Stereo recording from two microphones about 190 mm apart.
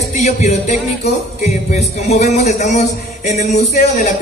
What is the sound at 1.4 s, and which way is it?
Speech, 35° left (ahead or behind).